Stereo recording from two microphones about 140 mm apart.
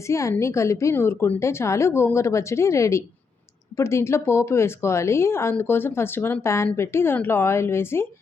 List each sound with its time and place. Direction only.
0.1 s a woman's voice: 20° left (ahead or behind)